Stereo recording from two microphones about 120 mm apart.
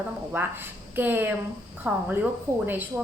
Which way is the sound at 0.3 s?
15° right (ahead or behind).